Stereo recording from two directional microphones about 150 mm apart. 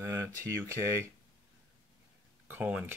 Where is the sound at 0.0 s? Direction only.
20° right (ahead or behind).